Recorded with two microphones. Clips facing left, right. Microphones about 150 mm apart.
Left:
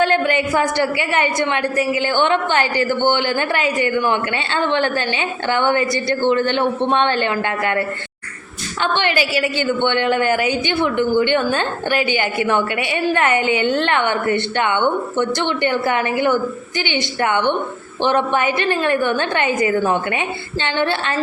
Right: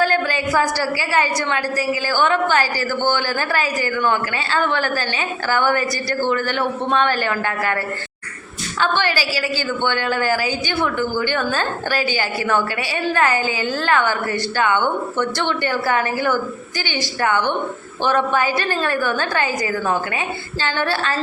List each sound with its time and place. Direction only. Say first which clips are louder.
0.0 s a woman's voice: left 3 dB; 25° left (ahead or behind)
8.8 s a woman's voice: left 1 dB; 20° left (ahead or behind)